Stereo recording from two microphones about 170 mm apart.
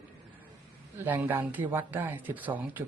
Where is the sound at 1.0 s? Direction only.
10° right (ahead or behind).